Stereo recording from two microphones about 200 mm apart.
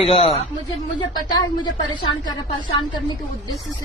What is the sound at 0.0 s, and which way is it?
Speech, 30° left (ahead or behind).